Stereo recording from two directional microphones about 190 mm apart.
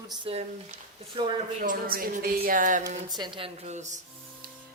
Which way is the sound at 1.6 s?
45° right (ahead or behind).